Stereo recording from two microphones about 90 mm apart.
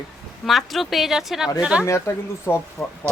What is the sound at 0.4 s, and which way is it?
Speech, centre (ahead or behind).